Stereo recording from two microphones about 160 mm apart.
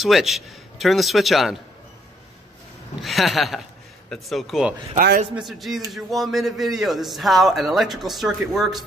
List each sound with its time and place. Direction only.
0.0 s a man's voice: centre (ahead or behind)
3.0 s a man's voice: centre (ahead or behind)
4.9 s a man's voice: 65° right (ahead or behind)
5.3 s a man's voice: centre (ahead or behind)